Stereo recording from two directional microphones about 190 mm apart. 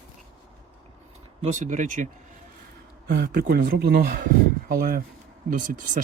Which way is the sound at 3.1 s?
55° right (ahead or behind).